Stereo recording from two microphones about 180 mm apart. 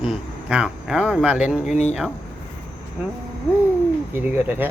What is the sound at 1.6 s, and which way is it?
Speech, 40° left (ahead or behind).